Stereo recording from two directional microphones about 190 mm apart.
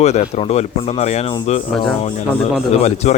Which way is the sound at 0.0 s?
35° left (ahead or behind).